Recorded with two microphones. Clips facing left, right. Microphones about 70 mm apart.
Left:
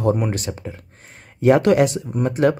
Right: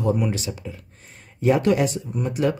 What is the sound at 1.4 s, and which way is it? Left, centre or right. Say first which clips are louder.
Speech: left 5 dB; left.